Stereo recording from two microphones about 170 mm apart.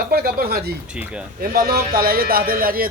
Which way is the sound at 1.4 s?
65° right (ahead or behind).